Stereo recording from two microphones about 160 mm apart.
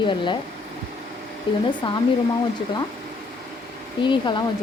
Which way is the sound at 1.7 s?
30° left (ahead or behind).